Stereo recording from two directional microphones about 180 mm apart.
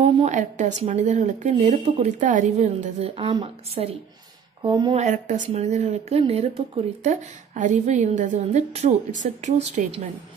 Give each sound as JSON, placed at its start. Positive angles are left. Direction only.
{"t": 0.0, "sound": "a woman's voice", "side_deg": -40}
{"t": 4.9, "sound": "a woman's voice", "side_deg": -40}